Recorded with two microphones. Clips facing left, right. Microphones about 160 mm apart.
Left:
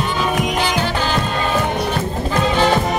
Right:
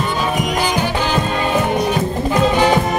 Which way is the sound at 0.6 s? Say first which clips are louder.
Right 1 dB; 10° right (ahead or behind).